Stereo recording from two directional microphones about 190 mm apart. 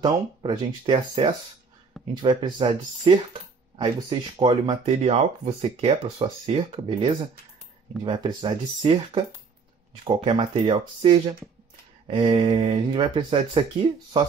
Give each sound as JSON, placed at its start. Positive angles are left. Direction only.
{"t": 0.0, "sound": "speech", "side_deg": -25}